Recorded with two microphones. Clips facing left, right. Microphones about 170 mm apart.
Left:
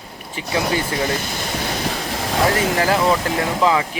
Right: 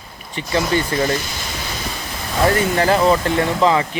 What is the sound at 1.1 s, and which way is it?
Ocean, 55° left (ahead or behind).